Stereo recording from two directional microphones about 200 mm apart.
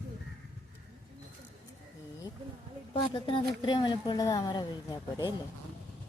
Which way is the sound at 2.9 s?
25° left (ahead or behind).